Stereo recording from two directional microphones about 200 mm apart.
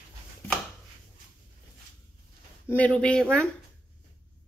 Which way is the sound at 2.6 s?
5° left (ahead or behind).